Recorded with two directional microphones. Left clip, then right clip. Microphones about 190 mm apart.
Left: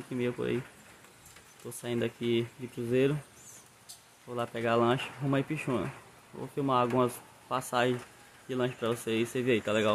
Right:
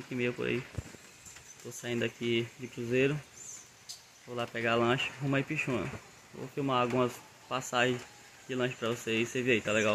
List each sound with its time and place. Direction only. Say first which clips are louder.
0.1 s speech: even; 15° left (ahead or behind)
1.8 s speech: left 1 dB; 15° left (ahead or behind)
4.3 s speech: left 1 dB; 15° left (ahead or behind)